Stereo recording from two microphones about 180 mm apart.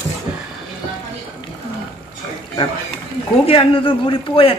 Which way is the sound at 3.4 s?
30° left (ahead or behind).